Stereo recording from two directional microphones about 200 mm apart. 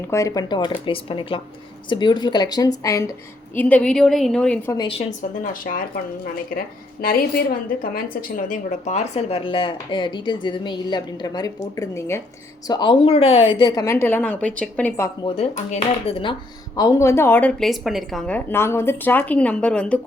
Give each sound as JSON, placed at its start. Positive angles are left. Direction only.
{"t": 0.0, "sound": "a woman's voice", "side_deg": 15}
{"t": 4.8, "sound": "a woman's voice", "side_deg": 30}
{"t": 7.0, "sound": "a woman's voice", "side_deg": 45}
{"t": 15.4, "sound": "speech", "side_deg": 30}
{"t": 16.7, "sound": "a woman's voice", "side_deg": 15}